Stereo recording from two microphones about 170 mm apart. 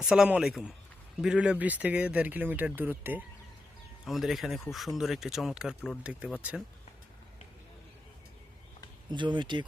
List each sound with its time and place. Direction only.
0.0 s speech: 5° right (ahead or behind)
9.0 s speech: 25° right (ahead or behind)